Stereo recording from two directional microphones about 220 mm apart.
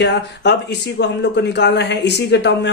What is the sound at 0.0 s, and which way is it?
Speech, 50° left (ahead or behind).